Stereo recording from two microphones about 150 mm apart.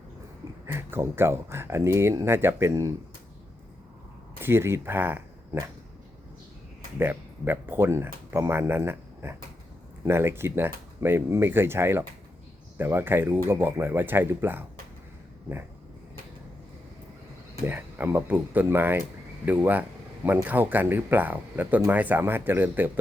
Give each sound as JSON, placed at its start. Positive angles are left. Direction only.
{"t": 0.6, "sound": "speech", "side_deg": -15}
{"t": 4.4, "sound": "speech", "side_deg": -15}
{"t": 7.0, "sound": "speech", "side_deg": -15}
{"t": 17.5, "sound": "speech", "side_deg": -15}